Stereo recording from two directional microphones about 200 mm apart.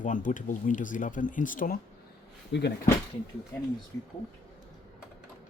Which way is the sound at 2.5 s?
60° left (ahead or behind).